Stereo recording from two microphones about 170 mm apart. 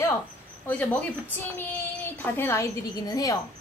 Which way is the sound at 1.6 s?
10° left (ahead or behind).